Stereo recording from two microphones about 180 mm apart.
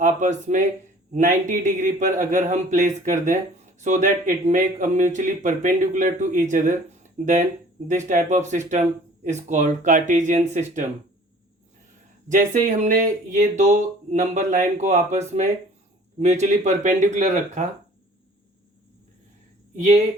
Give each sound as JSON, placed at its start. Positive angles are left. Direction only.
{"t": 0.0, "sound": "speech", "side_deg": -40}
{"t": 12.3, "sound": "speech", "side_deg": -45}
{"t": 16.2, "sound": "speech", "side_deg": -40}
{"t": 19.7, "sound": "speech", "side_deg": -40}